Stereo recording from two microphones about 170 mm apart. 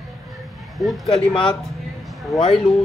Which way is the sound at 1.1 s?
35° left (ahead or behind).